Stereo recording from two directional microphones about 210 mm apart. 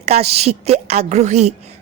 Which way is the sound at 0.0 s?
30° right (ahead or behind).